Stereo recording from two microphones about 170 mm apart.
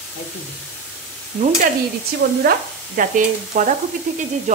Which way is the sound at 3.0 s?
50° right (ahead or behind).